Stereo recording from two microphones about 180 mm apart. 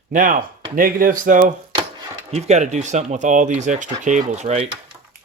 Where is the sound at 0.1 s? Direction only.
45° right (ahead or behind).